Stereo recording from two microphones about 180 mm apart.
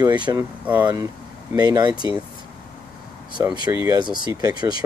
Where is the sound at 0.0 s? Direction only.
25° right (ahead or behind).